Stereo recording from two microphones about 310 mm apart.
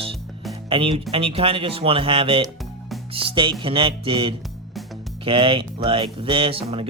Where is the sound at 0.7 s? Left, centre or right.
Centre.